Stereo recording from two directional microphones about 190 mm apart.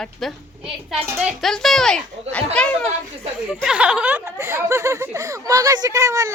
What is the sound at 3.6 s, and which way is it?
Speech, 5° right (ahead or behind).